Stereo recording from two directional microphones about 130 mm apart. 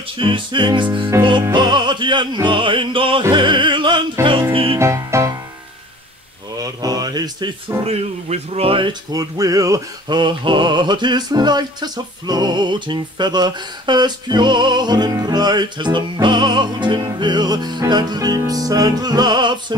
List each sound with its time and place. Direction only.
0.2 s male singing: 40° right (ahead or behind)
1.5 s music: 35° right (ahead or behind)
4.7 s music: 20° right (ahead or behind)
6.6 s music: 30° right (ahead or behind)
7.8 s music: 50° right (ahead or behind)
9.1 s male singing: 25° right (ahead or behind)